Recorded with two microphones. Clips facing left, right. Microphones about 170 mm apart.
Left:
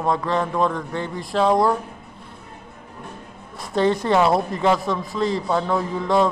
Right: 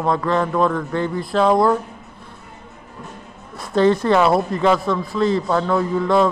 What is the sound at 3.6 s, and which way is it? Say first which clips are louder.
A man's voice: right 4 dB; 20° left (ahead or behind).